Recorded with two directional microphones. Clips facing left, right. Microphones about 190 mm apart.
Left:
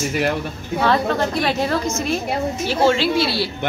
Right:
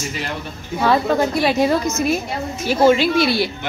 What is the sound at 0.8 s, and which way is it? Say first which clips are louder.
Speech: right 2 dB; 10° right (ahead or behind).